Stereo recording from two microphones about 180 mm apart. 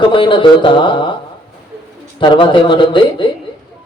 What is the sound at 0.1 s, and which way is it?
A man's voice, 25° left (ahead or behind).